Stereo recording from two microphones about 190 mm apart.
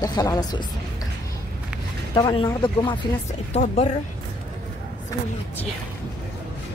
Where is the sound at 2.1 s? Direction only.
25° left (ahead or behind).